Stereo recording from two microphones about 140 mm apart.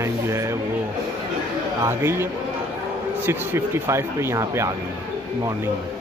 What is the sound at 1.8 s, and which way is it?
Speech, 15° right (ahead or behind).